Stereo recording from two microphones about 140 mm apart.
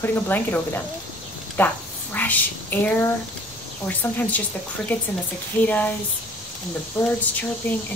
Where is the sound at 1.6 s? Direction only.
15° left (ahead or behind).